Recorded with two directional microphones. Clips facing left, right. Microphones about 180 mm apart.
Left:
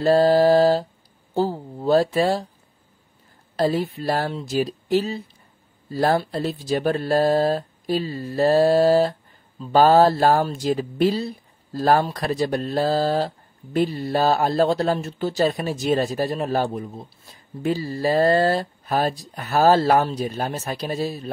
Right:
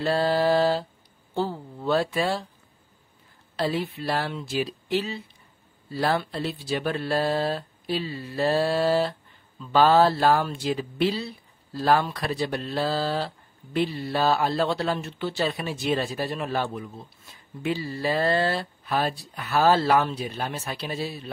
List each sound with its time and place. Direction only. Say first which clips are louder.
0.0 s mantra: left 7 dB; 40° left (ahead or behind)
1.3 s a sound: left 5 dB; 40° left (ahead or behind)
3.5 s speech: left 5 dB; 40° left (ahead or behind)